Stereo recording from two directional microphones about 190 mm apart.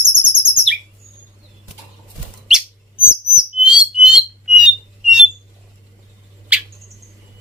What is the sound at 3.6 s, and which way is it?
Bird, 5° right (ahead or behind).